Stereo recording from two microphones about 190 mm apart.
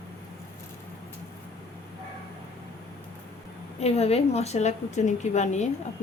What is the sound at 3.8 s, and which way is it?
A woman's voice, 35° left (ahead or behind).